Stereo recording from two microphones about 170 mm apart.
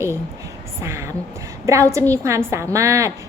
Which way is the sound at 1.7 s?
15° right (ahead or behind).